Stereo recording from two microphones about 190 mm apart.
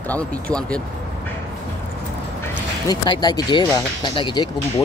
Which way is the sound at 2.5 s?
20° left (ahead or behind).